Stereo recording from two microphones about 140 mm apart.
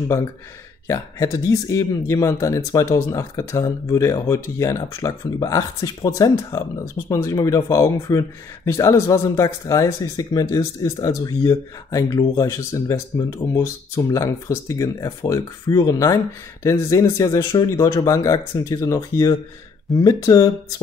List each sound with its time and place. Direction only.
0.8 s speech: 20° left (ahead or behind)